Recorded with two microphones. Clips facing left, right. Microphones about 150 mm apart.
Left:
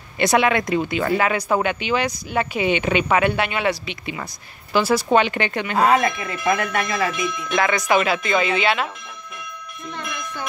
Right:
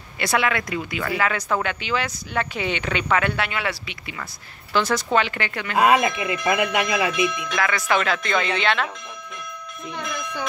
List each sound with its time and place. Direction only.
0.2 s speech: 20° left (ahead or behind)
4.7 s speech: 10° left (ahead or behind)
5.8 s speech: 15° right (ahead or behind)
7.5 s speech: 20° left (ahead or behind)